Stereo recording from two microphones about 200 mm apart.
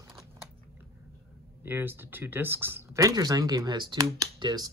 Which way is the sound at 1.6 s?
10° right (ahead or behind).